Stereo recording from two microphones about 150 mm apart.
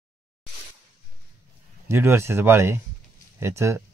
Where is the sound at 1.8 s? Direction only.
15° right (ahead or behind).